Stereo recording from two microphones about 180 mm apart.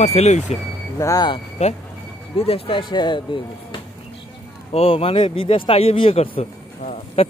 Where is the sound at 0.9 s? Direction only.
20° left (ahead or behind).